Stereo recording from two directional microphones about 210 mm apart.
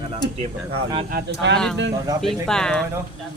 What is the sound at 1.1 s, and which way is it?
Speech, 55° right (ahead or behind).